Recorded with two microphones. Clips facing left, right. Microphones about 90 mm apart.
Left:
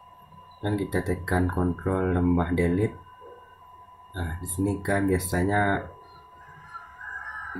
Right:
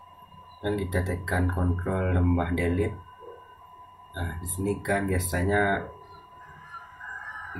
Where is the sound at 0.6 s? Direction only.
25° left (ahead or behind).